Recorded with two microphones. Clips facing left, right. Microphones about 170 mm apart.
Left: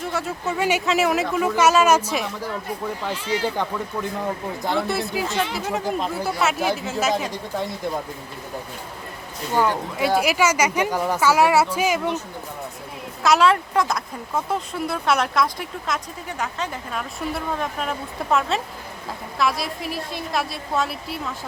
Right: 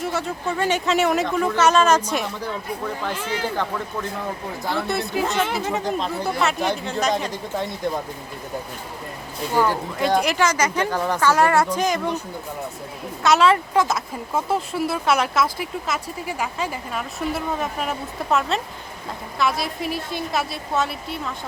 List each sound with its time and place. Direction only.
0.0 s speech: centre (ahead or behind)
3.1 s speech: 55° right (ahead or behind)
4.8 s speech: centre (ahead or behind)
10.0 s speech: 5° left (ahead or behind)
13.2 s speech: centre (ahead or behind)